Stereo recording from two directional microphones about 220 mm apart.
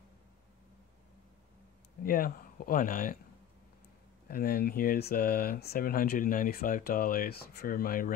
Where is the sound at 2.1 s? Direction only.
40° left (ahead or behind).